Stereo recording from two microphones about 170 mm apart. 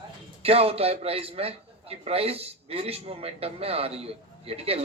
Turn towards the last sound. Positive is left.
turn(degrees=-35)  # may be behind; listen again after turning